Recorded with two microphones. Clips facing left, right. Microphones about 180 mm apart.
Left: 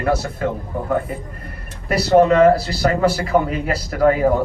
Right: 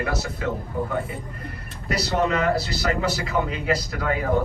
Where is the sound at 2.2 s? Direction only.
40° left (ahead or behind).